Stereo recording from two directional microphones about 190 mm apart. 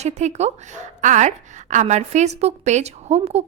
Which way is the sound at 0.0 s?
35° right (ahead or behind).